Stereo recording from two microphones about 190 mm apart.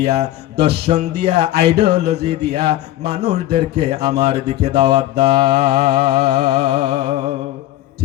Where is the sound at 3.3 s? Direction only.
30° right (ahead or behind).